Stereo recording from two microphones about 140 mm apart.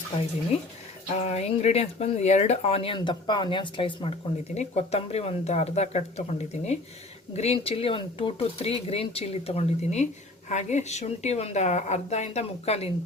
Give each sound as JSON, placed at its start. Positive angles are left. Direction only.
{"t": 0.5, "sound": "speech", "side_deg": 45}